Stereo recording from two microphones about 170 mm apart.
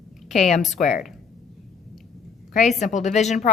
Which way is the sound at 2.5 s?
45° left (ahead or behind).